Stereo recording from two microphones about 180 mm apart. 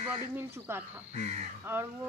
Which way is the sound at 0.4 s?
10° right (ahead or behind).